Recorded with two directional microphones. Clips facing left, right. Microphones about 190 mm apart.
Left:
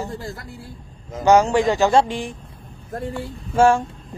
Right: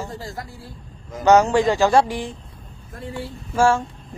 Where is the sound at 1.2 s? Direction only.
15° left (ahead or behind).